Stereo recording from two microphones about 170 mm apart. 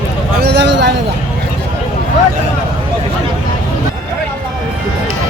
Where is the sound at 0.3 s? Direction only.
75° right (ahead or behind).